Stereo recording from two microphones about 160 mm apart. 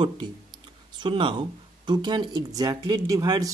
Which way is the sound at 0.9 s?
30° right (ahead or behind).